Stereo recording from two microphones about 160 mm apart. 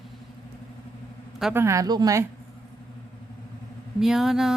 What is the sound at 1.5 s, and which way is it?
Speech, 20° right (ahead or behind).